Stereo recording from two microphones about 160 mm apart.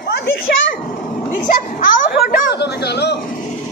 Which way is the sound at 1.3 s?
55° left (ahead or behind).